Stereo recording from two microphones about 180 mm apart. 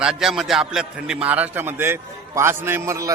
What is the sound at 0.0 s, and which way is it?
A man's voice, 5° right (ahead or behind).